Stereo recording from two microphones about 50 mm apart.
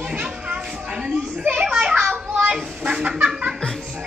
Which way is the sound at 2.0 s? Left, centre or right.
Right.